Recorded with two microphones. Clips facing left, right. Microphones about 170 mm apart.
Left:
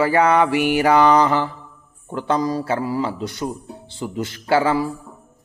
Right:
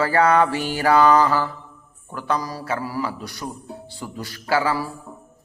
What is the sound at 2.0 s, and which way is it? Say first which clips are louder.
Speech: left 5 dB; 25° left (ahead or behind).